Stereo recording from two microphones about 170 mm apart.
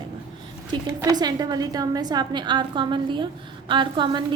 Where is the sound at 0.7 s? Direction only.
20° right (ahead or behind).